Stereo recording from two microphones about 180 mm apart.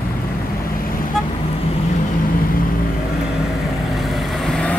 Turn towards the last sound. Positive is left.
turn(degrees=5)  # may be behind; listen again after turning